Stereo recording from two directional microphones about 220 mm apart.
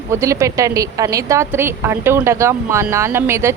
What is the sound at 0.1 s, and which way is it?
Speech, 15° right (ahead or behind).